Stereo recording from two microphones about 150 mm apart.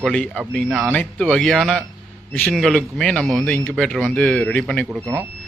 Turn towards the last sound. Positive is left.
turn(degrees=5)  # may be behind; listen again after turning